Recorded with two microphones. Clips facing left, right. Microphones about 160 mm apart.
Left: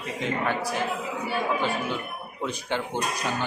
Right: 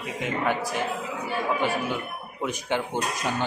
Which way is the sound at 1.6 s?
15° right (ahead or behind).